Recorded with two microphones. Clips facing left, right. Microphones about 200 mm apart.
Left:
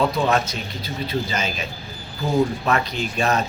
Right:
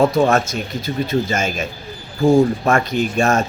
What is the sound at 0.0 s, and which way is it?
Speech, 45° right (ahead or behind).